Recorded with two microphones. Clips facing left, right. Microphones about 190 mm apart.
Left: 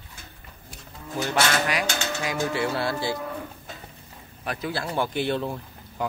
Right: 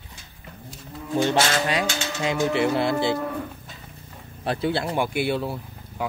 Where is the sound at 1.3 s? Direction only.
25° right (ahead or behind).